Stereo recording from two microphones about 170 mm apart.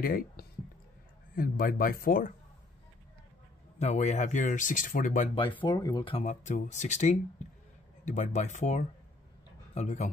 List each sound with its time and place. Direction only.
0.0 s speech: 60° left (ahead or behind)
3.8 s speech: 40° left (ahead or behind)
5.3 s speech: 30° left (ahead or behind)
6.4 s speech: 45° left (ahead or behind)